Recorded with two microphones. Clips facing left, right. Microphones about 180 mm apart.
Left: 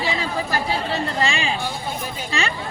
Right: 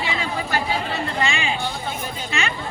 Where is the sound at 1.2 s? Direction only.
35° left (ahead or behind).